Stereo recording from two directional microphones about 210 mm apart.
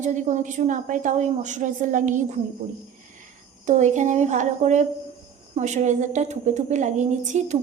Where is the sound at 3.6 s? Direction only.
35° right (ahead or behind).